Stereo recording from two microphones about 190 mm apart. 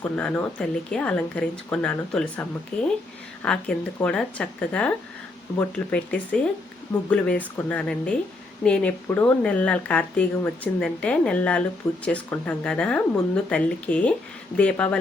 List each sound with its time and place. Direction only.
0.0 s speech: 5° left (ahead or behind)